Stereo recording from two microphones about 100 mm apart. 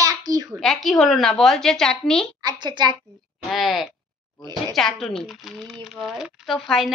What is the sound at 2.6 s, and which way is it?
Speech, 50° right (ahead or behind).